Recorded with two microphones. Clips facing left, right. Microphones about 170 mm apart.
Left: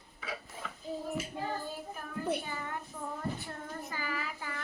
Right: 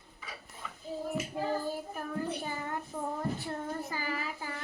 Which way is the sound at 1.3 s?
35° right (ahead or behind).